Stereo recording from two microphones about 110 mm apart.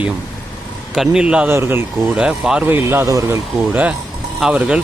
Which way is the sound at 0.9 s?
10° right (ahead or behind).